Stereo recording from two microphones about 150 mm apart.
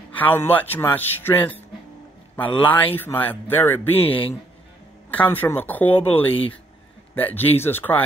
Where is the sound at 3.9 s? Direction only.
40° left (ahead or behind).